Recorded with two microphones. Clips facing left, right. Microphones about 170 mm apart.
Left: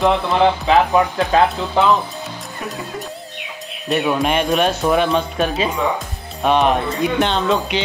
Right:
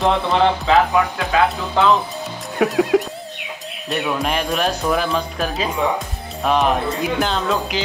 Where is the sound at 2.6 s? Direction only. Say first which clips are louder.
Right 11 dB; 90° right.